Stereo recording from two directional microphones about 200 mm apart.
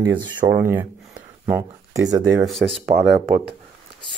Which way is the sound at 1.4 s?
15° right (ahead or behind).